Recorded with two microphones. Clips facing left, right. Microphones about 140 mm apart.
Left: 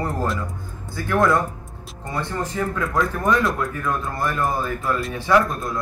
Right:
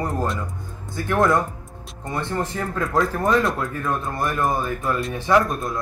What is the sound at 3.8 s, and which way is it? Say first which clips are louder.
Speech: right 2 dB; 20° right (ahead or behind).